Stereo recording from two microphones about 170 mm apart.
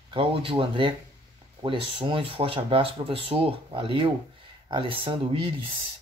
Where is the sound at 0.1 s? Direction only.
30° right (ahead or behind).